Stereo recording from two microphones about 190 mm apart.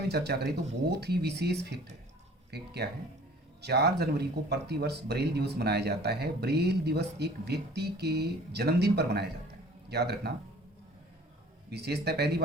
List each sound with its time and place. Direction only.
0.1 s speech: 60° right (ahead or behind)
11.7 s speech: 60° right (ahead or behind)